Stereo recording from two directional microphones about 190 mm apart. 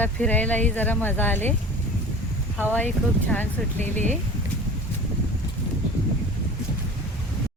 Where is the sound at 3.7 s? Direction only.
40° right (ahead or behind).